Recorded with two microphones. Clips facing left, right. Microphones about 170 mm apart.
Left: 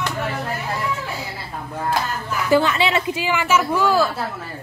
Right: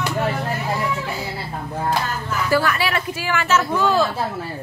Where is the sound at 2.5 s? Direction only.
20° left (ahead or behind).